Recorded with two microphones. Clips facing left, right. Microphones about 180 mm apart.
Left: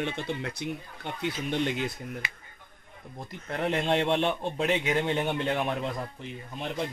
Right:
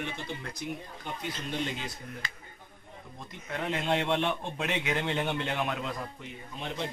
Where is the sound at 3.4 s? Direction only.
35° left (ahead or behind).